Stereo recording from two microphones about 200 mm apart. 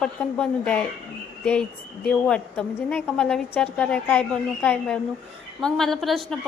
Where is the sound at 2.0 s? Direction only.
5° left (ahead or behind).